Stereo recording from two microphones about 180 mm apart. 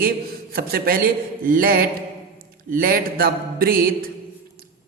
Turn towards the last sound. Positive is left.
turn(degrees=-55)  # may be behind; listen again after turning